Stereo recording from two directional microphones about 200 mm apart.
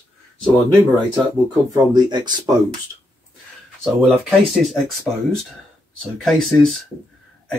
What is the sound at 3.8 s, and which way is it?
Speech, centre (ahead or behind).